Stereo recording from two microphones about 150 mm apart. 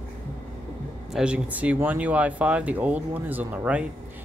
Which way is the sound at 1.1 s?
5° right (ahead or behind).